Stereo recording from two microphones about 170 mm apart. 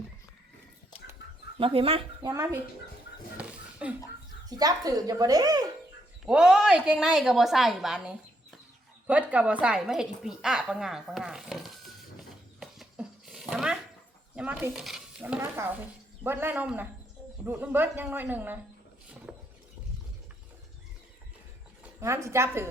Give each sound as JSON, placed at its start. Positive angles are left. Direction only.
{"t": 1.5, "sound": "speech", "side_deg": -35}
{"t": 2.3, "sound": "speech", "side_deg": -20}
{"t": 3.3, "sound": "a sound", "side_deg": -5}
{"t": 4.4, "sound": "speech", "side_deg": -20}
{"t": 6.2, "sound": "speech", "side_deg": -5}
{"t": 12.5, "sound": "dog", "side_deg": 0}
{"t": 14.3, "sound": "speech", "side_deg": -10}
{"t": 19.3, "sound": "a sound", "side_deg": -5}
{"t": 22.0, "sound": "speech", "side_deg": -15}